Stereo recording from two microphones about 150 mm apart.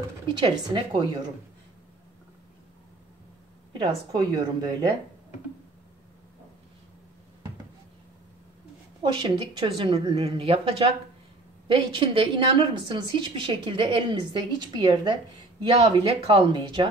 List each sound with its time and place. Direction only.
0.3 s a woman's voice: 30° right (ahead or behind)
3.7 s a woman's voice: 25° right (ahead or behind)
9.0 s a woman's voice: 30° right (ahead or behind)